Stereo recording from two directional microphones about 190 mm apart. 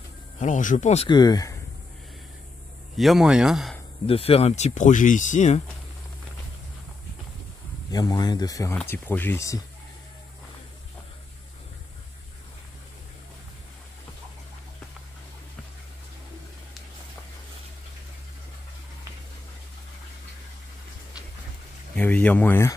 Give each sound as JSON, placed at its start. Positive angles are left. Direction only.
{"t": 0.4, "sound": "speech", "side_deg": 40}
{"t": 1.0, "sound": "speech", "side_deg": 20}
{"t": 3.0, "sound": "speech", "side_deg": 0}
{"t": 4.0, "sound": "speech", "side_deg": 30}
{"t": 7.9, "sound": "speech", "side_deg": 20}
{"t": 21.9, "sound": "speech", "side_deg": 10}